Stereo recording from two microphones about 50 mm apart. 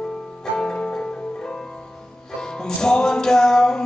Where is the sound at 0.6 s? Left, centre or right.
Centre.